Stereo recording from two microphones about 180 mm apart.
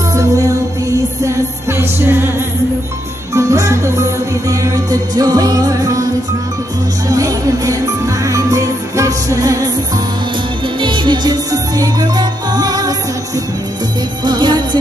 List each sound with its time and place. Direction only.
0.1 s music: 20° right (ahead or behind)
3.3 s music: 15° right (ahead or behind)
7.1 s music: 20° right (ahead or behind)
10.8 s music: 25° right (ahead or behind)
14.2 s music: 25° right (ahead or behind)